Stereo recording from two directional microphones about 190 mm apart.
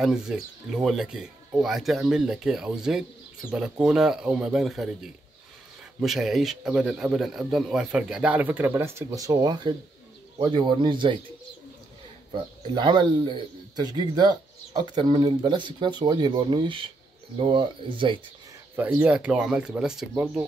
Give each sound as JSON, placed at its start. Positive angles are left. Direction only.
{"t": 0.0, "sound": "speech", "side_deg": -5}
{"t": 5.9, "sound": "speech", "side_deg": 0}
{"t": 12.3, "sound": "speech", "side_deg": -25}
{"t": 18.8, "sound": "speech", "side_deg": -5}